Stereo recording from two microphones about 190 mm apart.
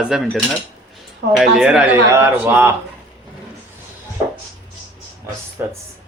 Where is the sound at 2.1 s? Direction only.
15° right (ahead or behind).